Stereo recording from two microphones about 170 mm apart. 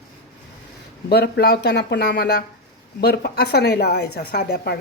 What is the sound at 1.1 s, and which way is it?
Speech, 70° left (ahead or behind).